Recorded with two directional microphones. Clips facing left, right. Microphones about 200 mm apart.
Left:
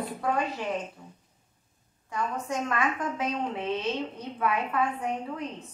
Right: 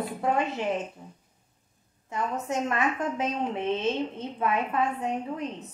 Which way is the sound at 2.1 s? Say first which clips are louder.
Right 1 dB; 25° right (ahead or behind).